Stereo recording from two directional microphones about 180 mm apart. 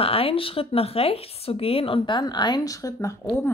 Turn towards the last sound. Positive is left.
turn(degrees=20)  # may be behind; listen again after turning